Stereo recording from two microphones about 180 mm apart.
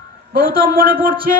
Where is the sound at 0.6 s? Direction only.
50° right (ahead or behind).